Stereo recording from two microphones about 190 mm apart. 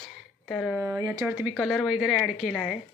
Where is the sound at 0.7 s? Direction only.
15° right (ahead or behind).